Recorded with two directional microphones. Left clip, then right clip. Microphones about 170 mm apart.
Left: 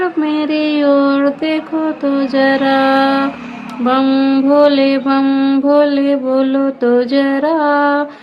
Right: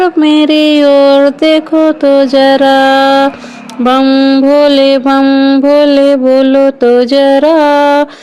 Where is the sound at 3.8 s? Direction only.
40° right (ahead or behind).